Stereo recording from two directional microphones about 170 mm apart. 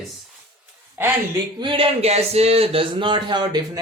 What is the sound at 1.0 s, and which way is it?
Speech, 25° right (ahead or behind).